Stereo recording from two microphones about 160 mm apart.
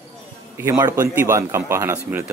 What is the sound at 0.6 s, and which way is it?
A man's voice, 15° right (ahead or behind).